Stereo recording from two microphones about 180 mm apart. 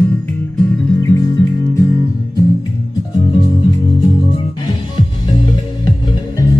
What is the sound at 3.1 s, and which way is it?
Music, 25° left (ahead or behind).